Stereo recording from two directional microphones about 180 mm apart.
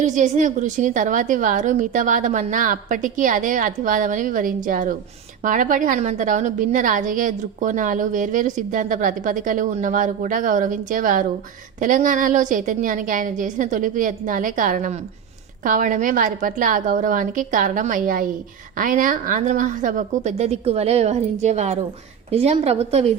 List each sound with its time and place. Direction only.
0.0 s a woman's voice: 45° right (ahead or behind)